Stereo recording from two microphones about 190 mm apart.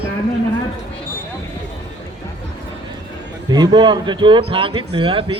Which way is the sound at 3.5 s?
25° right (ahead or behind).